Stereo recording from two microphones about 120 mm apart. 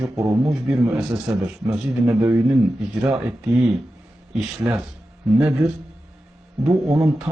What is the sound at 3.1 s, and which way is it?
Speech, 5° right (ahead or behind).